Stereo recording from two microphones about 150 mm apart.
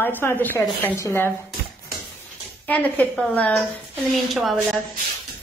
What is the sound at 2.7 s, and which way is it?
Speech, 10° left (ahead or behind).